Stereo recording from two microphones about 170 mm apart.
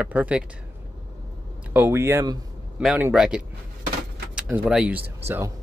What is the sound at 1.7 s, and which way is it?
Speech, 10° right (ahead or behind).